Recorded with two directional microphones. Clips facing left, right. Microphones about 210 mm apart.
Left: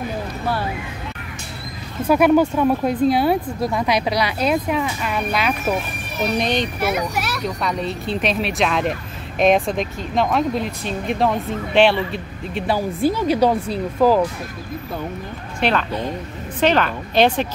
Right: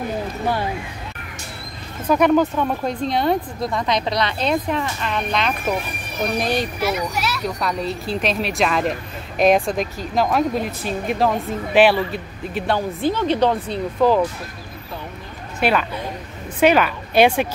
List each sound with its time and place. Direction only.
2.0 s speech: 5° left (ahead or behind)
6.3 s speech: 5° right (ahead or behind)
6.8 s a child's voice: 55° left (ahead or behind)
7.4 s speech: centre (ahead or behind)
12.5 s speech: 5° left (ahead or behind)
15.6 s a woman's voice: 5° right (ahead or behind)